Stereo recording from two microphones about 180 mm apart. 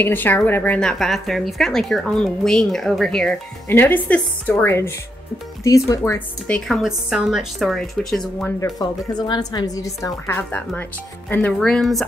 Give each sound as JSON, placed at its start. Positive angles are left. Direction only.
{"t": 0.0, "sound": "speech", "side_deg": 10}
{"t": 8.8, "sound": "a woman's voice", "side_deg": 20}